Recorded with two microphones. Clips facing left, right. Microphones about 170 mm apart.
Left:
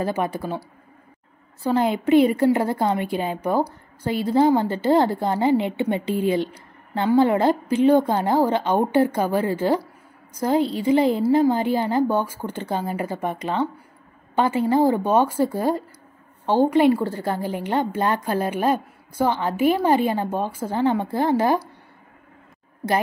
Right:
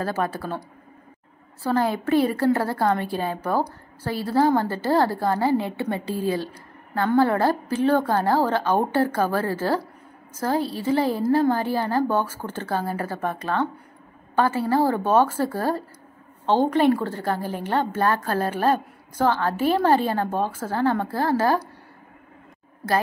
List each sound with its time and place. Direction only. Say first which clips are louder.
0.0 s a woman's voice: left 2 dB; 15° left (ahead or behind)
1.6 s a woman's voice: left 2 dB; 20° left (ahead or behind)